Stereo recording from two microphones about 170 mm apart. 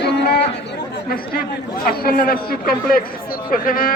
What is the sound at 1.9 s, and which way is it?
A man's voice, 60° left (ahead or behind).